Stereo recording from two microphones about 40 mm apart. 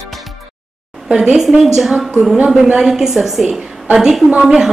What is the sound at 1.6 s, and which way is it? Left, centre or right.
A woman's voice, centre.